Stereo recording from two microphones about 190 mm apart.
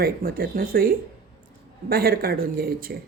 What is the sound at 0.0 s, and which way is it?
Speech, 50° right (ahead or behind).